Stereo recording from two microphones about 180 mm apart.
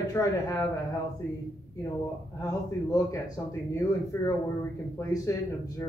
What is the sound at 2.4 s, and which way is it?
Speech, 20° left (ahead or behind).